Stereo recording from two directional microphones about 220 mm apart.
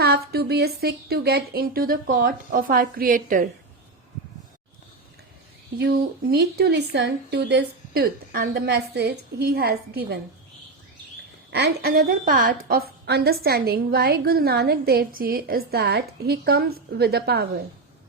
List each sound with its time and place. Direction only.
0.0 s a woman's voice: 45° right (ahead or behind)
5.7 s a woman's voice: 45° right (ahead or behind)
11.8 s a woman's voice: 40° right (ahead or behind)